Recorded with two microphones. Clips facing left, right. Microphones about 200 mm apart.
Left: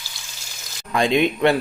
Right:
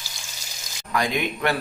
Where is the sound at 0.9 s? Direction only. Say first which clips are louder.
Left 6 dB; 25° left (ahead or behind).